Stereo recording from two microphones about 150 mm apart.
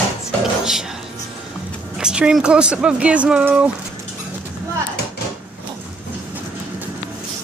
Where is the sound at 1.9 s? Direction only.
5° right (ahead or behind).